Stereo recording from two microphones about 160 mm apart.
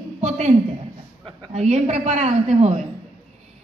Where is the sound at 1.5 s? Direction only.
40° right (ahead or behind).